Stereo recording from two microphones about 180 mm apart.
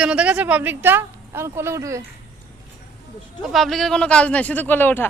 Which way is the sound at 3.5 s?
Centre (ahead or behind).